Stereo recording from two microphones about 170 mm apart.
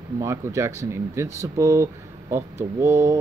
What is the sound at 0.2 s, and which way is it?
Speech, 15° right (ahead or behind).